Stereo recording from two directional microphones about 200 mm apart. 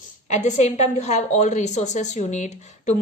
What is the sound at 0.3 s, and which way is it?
A woman's voice, 35° left (ahead or behind).